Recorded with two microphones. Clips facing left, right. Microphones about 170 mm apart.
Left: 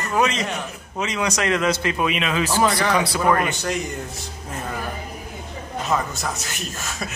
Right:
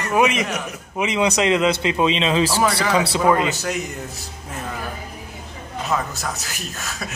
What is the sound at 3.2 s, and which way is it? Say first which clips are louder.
Speech: right 2 dB; 15° right (ahead or behind).